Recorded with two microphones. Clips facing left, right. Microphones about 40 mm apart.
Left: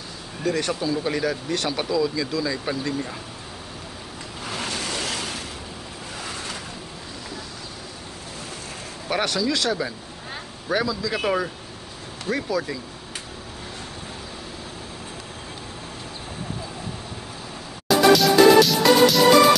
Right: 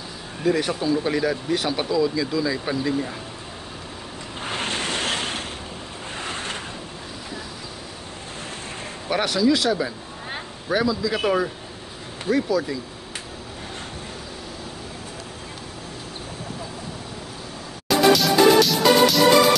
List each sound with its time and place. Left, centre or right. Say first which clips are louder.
0.4 s speech: right 2 dB; centre
4.5 s waves: right 3 dB; right
6.2 s a sound: right 3 dB; right
9.1 s speech: right 3 dB; centre
17.8 s music: left 1 dB; centre